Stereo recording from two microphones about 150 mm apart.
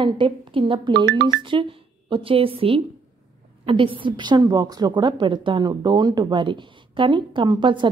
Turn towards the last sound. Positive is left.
turn(degrees=-30)  # may be behind; listen again after turning